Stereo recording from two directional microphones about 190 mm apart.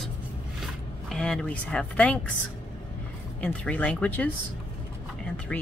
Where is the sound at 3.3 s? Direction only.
5° left (ahead or behind).